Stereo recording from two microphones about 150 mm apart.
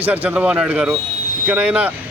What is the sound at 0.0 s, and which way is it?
Speech, 10° right (ahead or behind).